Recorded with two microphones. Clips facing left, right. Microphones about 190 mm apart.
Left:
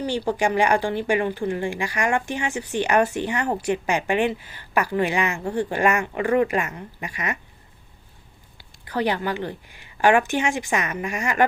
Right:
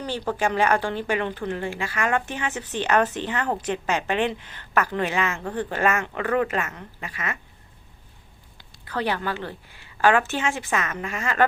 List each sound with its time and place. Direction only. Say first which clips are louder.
0.0 s speech: left 3 dB; 10° left (ahead or behind)
8.9 s speech: left 3 dB; 15° left (ahead or behind)